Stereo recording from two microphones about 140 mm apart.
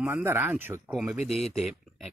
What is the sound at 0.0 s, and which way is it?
Speech, 15° right (ahead or behind).